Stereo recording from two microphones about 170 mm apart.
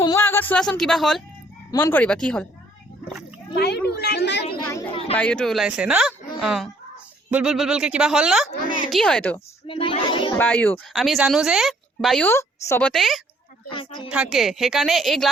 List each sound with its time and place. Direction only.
0.0 s speech: 15° left (ahead or behind)
3.5 s speech: 75° left (ahead or behind)
4.9 s speech: 35° left (ahead or behind)
5.1 s speech: 5° left (ahead or behind)
9.6 s speech: 35° left (ahead or behind)
10.3 s speech: 10° left (ahead or behind)
12.9 s speech: centre (ahead or behind)
13.7 s speech: 30° left (ahead or behind)
14.1 s speech: 5° right (ahead or behind)